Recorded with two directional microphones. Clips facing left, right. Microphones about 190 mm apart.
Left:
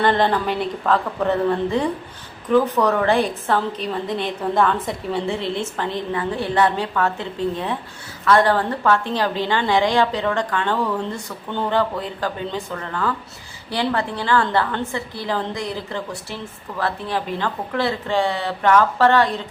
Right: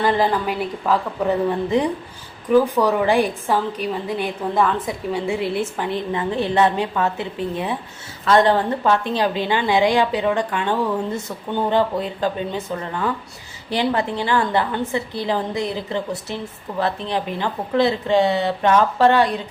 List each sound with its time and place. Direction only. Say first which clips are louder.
0.0 s a woman's voice: even; 5° right (ahead or behind)